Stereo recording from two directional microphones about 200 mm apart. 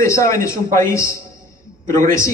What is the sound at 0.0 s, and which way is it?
A man's voice, 15° left (ahead or behind).